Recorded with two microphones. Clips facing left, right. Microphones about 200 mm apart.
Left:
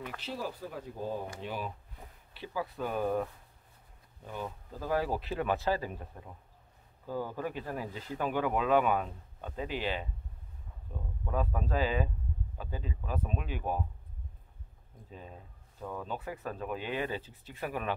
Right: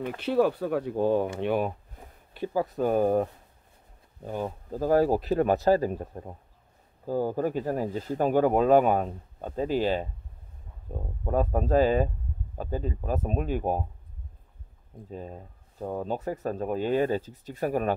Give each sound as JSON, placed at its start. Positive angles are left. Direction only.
{"t": 0.2, "sound": "speech", "side_deg": -65}
{"t": 1.4, "sound": "speech", "side_deg": -60}
{"t": 2.3, "sound": "speech", "side_deg": -45}
{"t": 15.0, "sound": "speech", "side_deg": -40}